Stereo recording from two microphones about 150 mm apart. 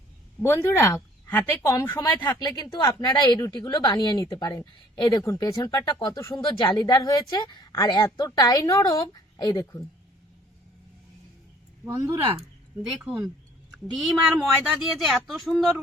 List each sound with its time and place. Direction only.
0.4 s speech: 20° left (ahead or behind)
2.2 s speech: 30° left (ahead or behind)
5.2 s speech: 20° left (ahead or behind)
6.6 s a woman's voice: 30° left (ahead or behind)
11.9 s speech: 15° right (ahead or behind)
13.2 s a sound: centre (ahead or behind)
14.3 s speech: 5° right (ahead or behind)